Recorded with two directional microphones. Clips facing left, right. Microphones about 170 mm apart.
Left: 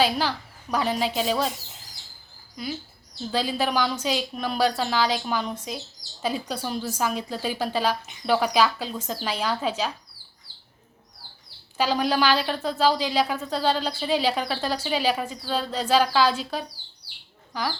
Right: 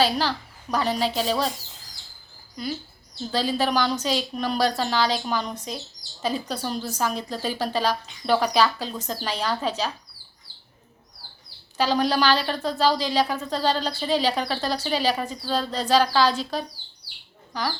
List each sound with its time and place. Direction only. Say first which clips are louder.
0.0 s a woman's voice: right 1 dB; 10° left (ahead or behind)
3.3 s speech: right 1 dB; 10° left (ahead or behind)
11.8 s speech: right 1 dB; 10° left (ahead or behind)